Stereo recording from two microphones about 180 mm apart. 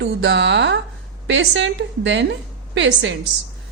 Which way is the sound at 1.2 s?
90° right.